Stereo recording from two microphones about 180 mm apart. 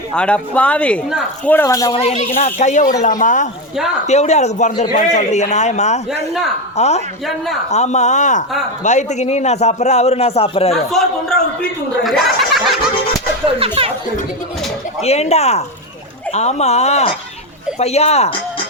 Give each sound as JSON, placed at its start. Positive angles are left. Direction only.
{"t": 0.1, "sound": "speech", "side_deg": 5}
{"t": 1.9, "sound": "a man's voice", "side_deg": 35}
{"t": 6.1, "sound": "a man's voice", "side_deg": 0}
{"t": 6.7, "sound": "a man's voice", "side_deg": 40}
{"t": 7.3, "sound": "a man's voice", "side_deg": 0}
{"t": 7.7, "sound": "a man's voice", "side_deg": 40}
{"t": 11.0, "sound": "a man's voice", "side_deg": 0}
{"t": 12.0, "sound": "goat", "side_deg": 0}
{"t": 13.4, "sound": "speech", "side_deg": -30}
{"t": 15.0, "sound": "a man's voice", "side_deg": 35}